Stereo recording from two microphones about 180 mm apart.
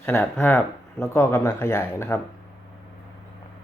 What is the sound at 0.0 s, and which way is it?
Speech, 10° left (ahead or behind).